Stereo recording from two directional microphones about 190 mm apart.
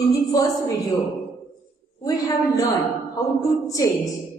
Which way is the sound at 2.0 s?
20° left (ahead or behind).